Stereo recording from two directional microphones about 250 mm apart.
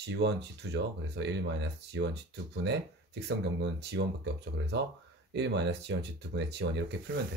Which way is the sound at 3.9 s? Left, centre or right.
Right.